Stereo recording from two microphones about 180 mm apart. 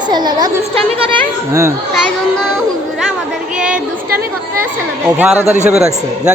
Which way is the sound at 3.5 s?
5° right (ahead or behind).